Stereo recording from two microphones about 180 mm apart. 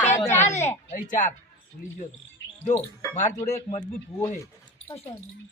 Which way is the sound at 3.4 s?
40° left (ahead or behind).